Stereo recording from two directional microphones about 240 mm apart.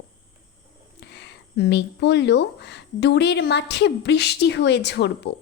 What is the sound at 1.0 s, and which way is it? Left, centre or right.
Speech, left.